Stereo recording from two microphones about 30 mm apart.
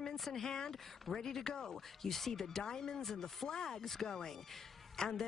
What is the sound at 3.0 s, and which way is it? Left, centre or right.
Speech, centre.